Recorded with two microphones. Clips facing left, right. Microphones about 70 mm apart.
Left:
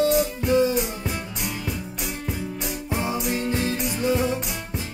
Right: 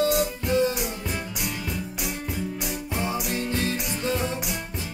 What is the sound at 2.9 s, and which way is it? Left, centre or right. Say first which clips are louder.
Music: left 3 dB; centre.